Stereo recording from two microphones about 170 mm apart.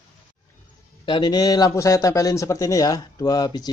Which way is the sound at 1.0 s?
25° left (ahead or behind).